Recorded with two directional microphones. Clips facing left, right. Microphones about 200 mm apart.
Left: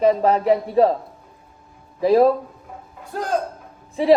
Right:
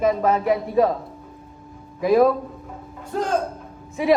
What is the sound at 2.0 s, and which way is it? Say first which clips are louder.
Speech: left 1 dB; 30° left (ahead or behind).